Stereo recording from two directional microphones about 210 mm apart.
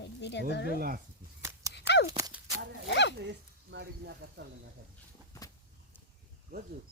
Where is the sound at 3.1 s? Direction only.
55° right (ahead or behind).